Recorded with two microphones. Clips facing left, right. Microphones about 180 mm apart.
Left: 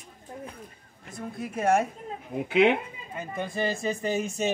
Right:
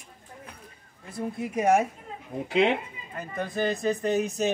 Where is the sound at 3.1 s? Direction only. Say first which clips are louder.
Right 1 dB; centre (ahead or behind).